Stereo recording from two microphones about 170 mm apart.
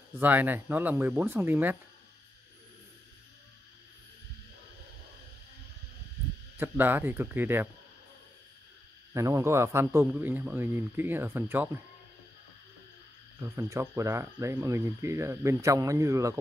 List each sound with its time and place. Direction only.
0.2 s speech: 10° right (ahead or behind)
6.5 s speech: 10° right (ahead or behind)
9.1 s speech: 15° right (ahead or behind)
13.6 s speech: 15° right (ahead or behind)